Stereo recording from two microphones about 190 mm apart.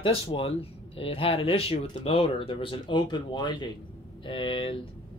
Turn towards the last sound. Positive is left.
turn(degrees=25)  # may be behind; listen again after turning